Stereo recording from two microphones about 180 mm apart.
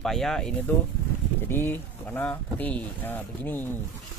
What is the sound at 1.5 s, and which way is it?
Speech, 10° left (ahead or behind).